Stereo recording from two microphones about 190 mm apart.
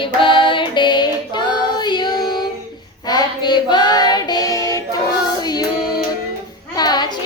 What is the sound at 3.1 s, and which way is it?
Child singing, 20° left (ahead or behind).